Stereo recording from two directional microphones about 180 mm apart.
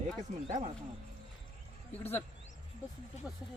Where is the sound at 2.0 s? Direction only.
10° left (ahead or behind).